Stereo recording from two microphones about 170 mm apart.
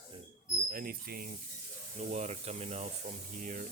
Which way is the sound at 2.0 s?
45° right (ahead or behind).